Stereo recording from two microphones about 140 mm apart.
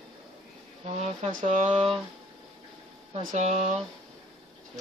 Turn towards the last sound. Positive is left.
turn(degrees=-55)  # may be behind; listen again after turning